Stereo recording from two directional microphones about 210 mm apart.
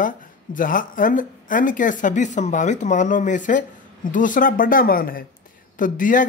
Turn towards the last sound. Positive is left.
turn(degrees=40)  # may be behind; listen again after turning